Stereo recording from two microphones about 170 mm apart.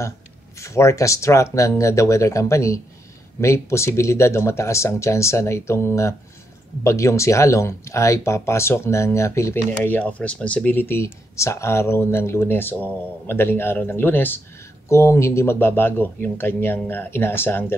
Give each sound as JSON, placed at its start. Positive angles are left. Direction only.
{"t": 0.6, "sound": "speech", "side_deg": 15}